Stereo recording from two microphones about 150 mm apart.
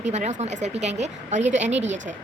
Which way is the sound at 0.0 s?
50° right (ahead or behind).